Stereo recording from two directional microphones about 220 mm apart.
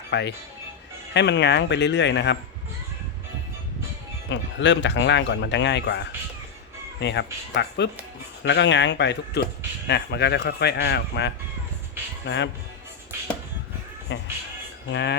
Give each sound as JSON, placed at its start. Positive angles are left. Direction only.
{"t": 0.1, "sound": "speech", "side_deg": 50}
{"t": 4.3, "sound": "speech", "side_deg": 55}
{"t": 14.1, "sound": "music", "side_deg": 55}
{"t": 14.9, "sound": "speech", "side_deg": 50}